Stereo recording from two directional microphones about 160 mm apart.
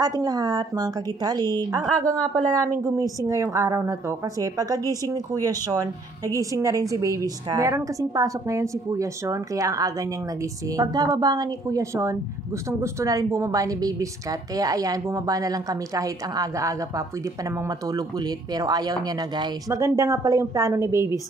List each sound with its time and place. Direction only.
0.0 s a woman's voice: 25° right (ahead or behind)
18.5 s a woman's voice: 25° right (ahead or behind)